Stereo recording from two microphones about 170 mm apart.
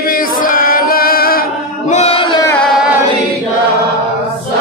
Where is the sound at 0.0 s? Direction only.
55° left (ahead or behind).